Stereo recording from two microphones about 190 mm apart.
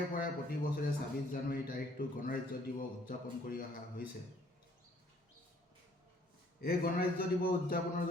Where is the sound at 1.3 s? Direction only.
50° left (ahead or behind).